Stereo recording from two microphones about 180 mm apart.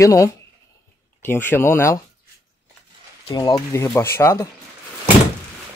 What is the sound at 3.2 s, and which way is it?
Speech, 20° left (ahead or behind).